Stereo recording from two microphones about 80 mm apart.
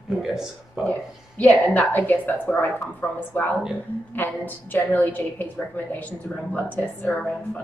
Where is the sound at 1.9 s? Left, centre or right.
Left.